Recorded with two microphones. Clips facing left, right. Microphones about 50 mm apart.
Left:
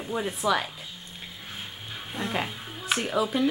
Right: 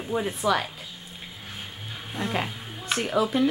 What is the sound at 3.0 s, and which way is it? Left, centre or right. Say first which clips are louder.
Speech: right 3 dB; centre.